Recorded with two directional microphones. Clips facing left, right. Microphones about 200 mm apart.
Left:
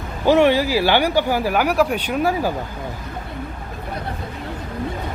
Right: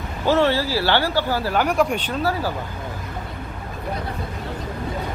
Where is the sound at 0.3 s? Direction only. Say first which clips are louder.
Left 4 dB; 15° left (ahead or behind).